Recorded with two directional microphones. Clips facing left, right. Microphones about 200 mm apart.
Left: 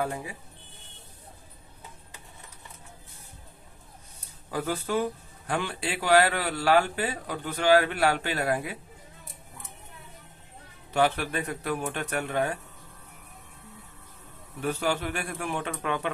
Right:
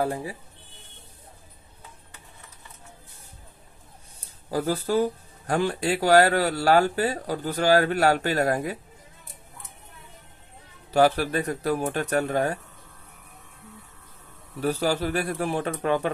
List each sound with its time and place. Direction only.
0.0 s speech: 35° right (ahead or behind)
4.5 s speech: 35° right (ahead or behind)
10.9 s speech: 35° right (ahead or behind)
14.6 s speech: 35° right (ahead or behind)